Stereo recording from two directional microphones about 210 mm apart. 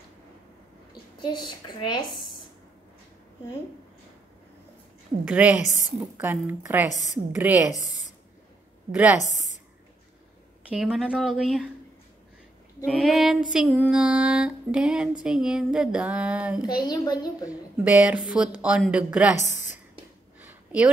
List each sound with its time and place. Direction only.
1.1 s a child's voice: 20° left (ahead or behind)
5.3 s a woman's voice: 5° right (ahead or behind)
6.9 s a woman's voice: 35° left (ahead or behind)
7.3 s a woman's voice: 10° right (ahead or behind)
8.9 s a woman's voice: 5° right (ahead or behind)
9.3 s speech: 35° left (ahead or behind)
10.7 s music: 5° right (ahead or behind)
12.8 s music: centre (ahead or behind)
16.8 s a child's voice: 20° left (ahead or behind)
17.8 s a woman's voice: 5° right (ahead or behind)
18.6 s music: 5° right (ahead or behind)
19.4 s a sound: 35° left (ahead or behind)
20.3 s a sound: 5° right (ahead or behind)